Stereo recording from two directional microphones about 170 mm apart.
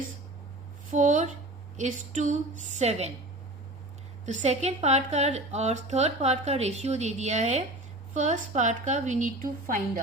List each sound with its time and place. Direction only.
0.9 s a woman's voice: 50° right (ahead or behind)
4.3 s a woman's voice: 45° right (ahead or behind)